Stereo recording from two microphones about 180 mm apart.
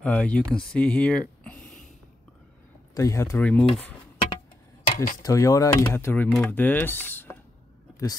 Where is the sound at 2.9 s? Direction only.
15° left (ahead or behind).